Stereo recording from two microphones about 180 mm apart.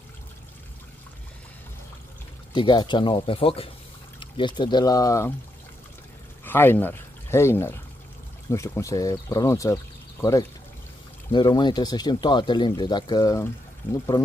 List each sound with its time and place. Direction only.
2.5 s speech: 25° left (ahead or behind)
6.4 s speech: 10° left (ahead or behind)
11.3 s speech: 25° left (ahead or behind)